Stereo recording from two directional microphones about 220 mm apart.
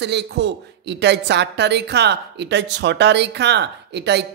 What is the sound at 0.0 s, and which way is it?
A woman's voice, 50° right (ahead or behind).